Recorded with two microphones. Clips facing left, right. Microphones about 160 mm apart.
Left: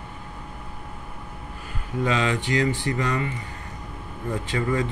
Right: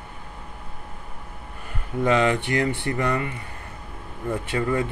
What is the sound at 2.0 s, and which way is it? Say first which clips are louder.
Speech: right 4 dB; 55° right (ahead or behind).